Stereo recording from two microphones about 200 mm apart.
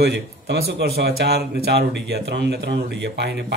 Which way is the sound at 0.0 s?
55° right (ahead or behind).